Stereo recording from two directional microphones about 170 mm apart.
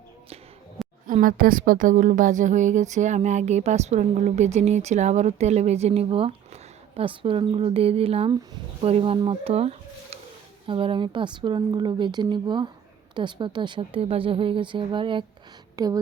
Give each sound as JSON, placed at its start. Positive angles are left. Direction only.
{"t": 1.0, "sound": "a woman's voice", "side_deg": -55}